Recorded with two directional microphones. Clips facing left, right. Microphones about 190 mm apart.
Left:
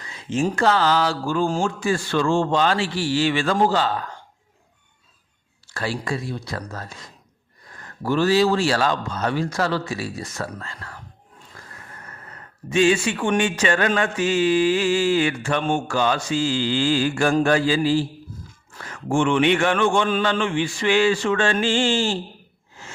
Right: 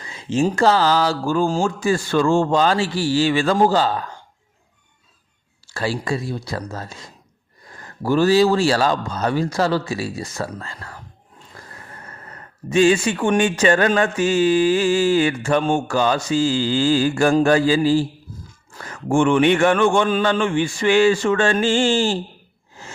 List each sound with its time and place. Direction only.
0.1 s mantra: 30° right (ahead or behind)
5.7 s mantra: 30° right (ahead or behind)
8.0 s mantra: 40° right (ahead or behind)
11.5 s roar: 30° right (ahead or behind)
12.6 s mantra: 40° right (ahead or behind)
18.8 s a man's voice: 45° right (ahead or behind)